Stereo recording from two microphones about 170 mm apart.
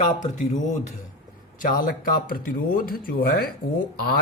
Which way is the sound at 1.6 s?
55° left (ahead or behind).